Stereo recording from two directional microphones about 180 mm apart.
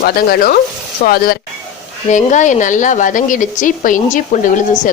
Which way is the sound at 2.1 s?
40° left (ahead or behind).